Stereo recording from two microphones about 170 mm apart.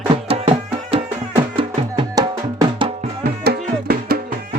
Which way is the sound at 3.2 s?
65° right (ahead or behind).